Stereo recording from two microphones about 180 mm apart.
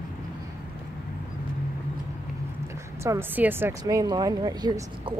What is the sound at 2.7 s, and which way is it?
Speech, 15° right (ahead or behind).